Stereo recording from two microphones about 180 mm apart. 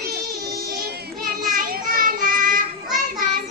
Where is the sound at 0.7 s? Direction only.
55° right (ahead or behind).